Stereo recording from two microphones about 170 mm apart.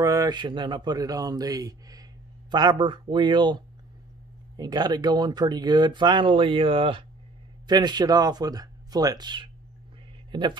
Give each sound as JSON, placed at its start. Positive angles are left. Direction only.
{"t": 0.0, "sound": "speech", "side_deg": -20}